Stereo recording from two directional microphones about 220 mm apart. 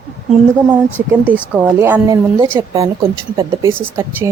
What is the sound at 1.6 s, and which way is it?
Speech, 10° right (ahead or behind).